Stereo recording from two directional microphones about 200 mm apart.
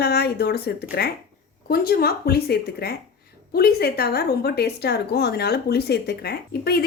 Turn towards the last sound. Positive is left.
turn(degrees=50)  # may be behind; listen again after turning